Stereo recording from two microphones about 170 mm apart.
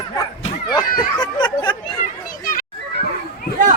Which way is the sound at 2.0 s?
45° left (ahead or behind).